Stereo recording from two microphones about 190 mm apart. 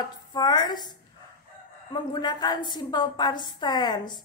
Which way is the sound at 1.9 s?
20° left (ahead or behind).